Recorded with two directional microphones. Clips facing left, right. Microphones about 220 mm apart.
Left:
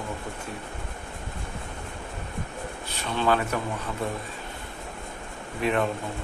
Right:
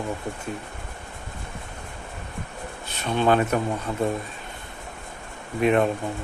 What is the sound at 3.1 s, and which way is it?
Speech, 20° right (ahead or behind).